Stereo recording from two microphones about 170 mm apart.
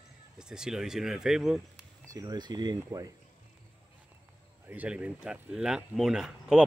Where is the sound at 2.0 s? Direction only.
20° right (ahead or behind).